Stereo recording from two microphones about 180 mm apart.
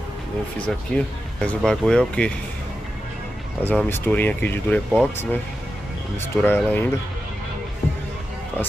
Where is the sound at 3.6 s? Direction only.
10° left (ahead or behind).